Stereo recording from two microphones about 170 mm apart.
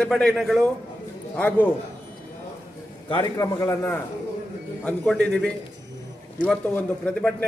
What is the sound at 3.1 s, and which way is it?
A man's voice, 20° left (ahead or behind).